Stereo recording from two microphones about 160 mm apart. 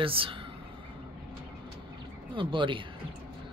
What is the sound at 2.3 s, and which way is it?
Speech, 30° right (ahead or behind).